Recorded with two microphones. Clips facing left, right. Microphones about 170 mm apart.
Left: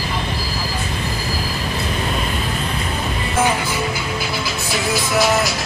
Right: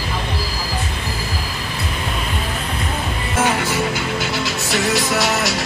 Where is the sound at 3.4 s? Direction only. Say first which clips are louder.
Right 1 dB; 75° right (ahead or behind).